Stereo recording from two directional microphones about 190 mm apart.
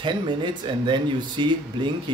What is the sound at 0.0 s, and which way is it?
Speech, 25° right (ahead or behind).